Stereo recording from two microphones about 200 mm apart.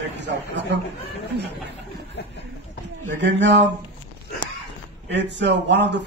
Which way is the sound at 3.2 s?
65° right (ahead or behind).